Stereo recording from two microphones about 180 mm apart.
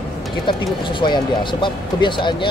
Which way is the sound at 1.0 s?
25° left (ahead or behind).